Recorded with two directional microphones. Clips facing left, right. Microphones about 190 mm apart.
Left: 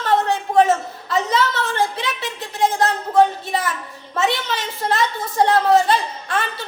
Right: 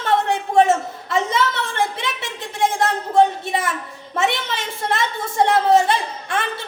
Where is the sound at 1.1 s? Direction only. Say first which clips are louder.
Left 1 dB; 25° right (ahead or behind).